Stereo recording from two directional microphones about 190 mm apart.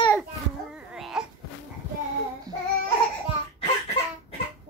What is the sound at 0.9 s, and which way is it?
Baby cry, 5° right (ahead or behind).